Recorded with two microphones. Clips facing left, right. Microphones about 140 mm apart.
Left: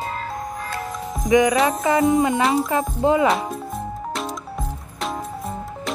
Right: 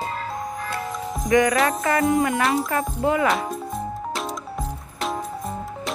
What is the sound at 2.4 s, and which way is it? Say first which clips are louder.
Speech: left 2 dB; centre (ahead or behind).